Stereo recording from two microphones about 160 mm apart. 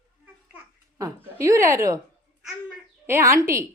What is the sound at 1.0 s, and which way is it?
A woman's voice, 20° right (ahead or behind).